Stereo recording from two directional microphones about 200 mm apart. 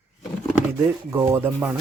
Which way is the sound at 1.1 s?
15° right (ahead or behind).